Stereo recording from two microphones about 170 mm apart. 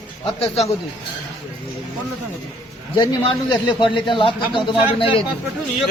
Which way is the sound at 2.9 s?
25° left (ahead or behind).